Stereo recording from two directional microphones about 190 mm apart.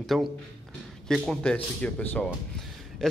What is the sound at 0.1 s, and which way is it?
A man's voice, centre (ahead or behind).